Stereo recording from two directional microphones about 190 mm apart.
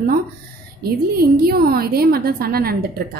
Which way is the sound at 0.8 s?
55° right (ahead or behind).